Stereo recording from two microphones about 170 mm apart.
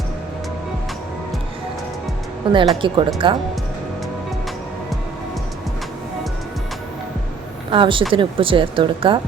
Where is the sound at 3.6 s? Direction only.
Centre (ahead or behind).